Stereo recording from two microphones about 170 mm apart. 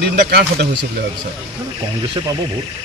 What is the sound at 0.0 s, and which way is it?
Speech, 65° right (ahead or behind).